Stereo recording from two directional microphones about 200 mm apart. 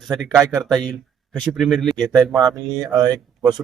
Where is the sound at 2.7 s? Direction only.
20° right (ahead or behind).